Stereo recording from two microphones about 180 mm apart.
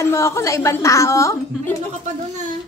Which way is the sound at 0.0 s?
15° left (ahead or behind).